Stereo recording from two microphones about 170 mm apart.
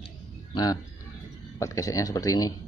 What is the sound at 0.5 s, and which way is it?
Speech, 20° left (ahead or behind).